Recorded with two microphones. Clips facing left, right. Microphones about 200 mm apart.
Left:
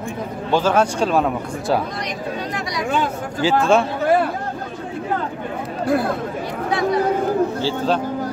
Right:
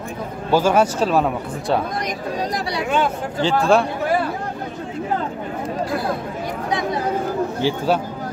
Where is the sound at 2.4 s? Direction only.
35° right (ahead or behind).